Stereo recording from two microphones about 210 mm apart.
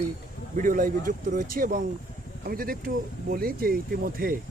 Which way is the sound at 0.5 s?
40° right (ahead or behind).